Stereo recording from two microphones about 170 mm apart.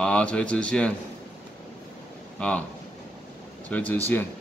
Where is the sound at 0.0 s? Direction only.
5° left (ahead or behind).